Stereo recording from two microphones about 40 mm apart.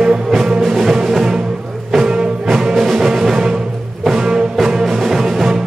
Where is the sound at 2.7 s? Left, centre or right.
Centre.